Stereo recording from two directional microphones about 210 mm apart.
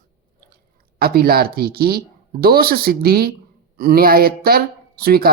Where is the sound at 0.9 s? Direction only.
45° right (ahead or behind).